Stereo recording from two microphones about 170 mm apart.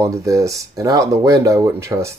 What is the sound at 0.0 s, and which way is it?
Speech, 15° right (ahead or behind).